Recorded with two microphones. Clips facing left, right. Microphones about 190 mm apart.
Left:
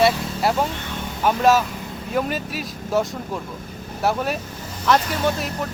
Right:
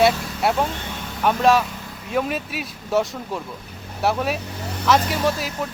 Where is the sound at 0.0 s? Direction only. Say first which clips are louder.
Even; centre (ahead or behind).